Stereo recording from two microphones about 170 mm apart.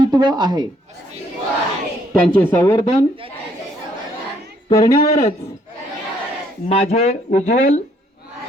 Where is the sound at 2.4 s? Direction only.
15° left (ahead or behind).